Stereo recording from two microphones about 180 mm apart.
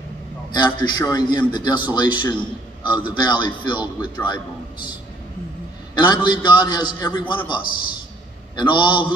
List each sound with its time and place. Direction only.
0.5 s a man's voice: 25° left (ahead or behind)
5.9 s a man's voice: 25° left (ahead or behind)